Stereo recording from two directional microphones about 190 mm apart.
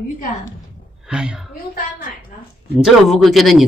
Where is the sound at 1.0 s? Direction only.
5° right (ahead or behind).